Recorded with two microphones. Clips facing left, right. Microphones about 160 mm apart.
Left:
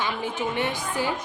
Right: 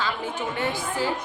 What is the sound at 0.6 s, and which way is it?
Speech, 15° left (ahead or behind).